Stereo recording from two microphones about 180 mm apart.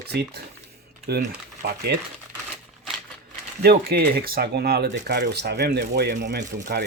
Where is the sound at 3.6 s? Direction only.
60° right (ahead or behind).